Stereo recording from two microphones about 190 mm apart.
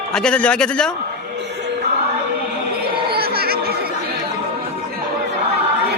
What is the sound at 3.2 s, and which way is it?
Chatter, 55° right (ahead or behind).